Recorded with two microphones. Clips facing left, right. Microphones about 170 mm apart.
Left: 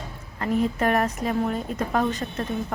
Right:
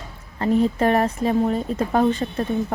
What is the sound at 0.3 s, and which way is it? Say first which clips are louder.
Speech: right 5 dB; 30° right (ahead or behind).